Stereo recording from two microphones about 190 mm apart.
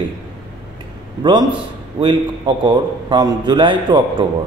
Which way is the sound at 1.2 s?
25° right (ahead or behind).